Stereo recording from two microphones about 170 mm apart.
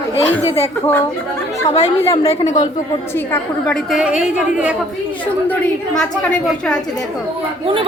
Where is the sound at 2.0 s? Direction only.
20° left (ahead or behind).